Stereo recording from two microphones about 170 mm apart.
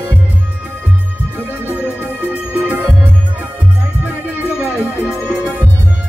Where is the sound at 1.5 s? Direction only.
10° right (ahead or behind).